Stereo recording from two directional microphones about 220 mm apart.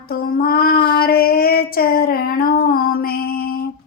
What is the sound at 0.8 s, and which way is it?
Female singing, 45° left (ahead or behind).